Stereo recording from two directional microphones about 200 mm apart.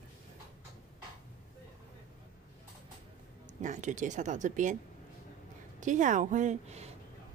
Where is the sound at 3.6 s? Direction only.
35° right (ahead or behind).